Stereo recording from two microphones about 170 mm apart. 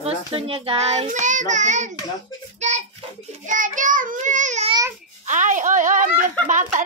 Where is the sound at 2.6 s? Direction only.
45° right (ahead or behind).